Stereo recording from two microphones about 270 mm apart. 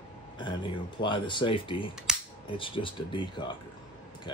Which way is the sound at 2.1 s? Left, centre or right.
Centre.